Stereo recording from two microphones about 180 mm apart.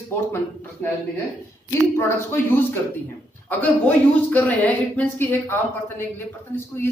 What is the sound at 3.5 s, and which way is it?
A man's voice, 10° left (ahead or behind).